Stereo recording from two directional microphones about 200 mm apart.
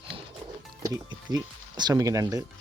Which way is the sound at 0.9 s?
20° right (ahead or behind).